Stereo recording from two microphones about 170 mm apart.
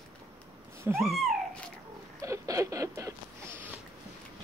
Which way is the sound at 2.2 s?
20° right (ahead or behind).